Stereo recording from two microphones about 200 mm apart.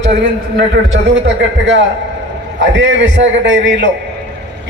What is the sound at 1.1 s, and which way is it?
A man's voice, 70° right (ahead or behind).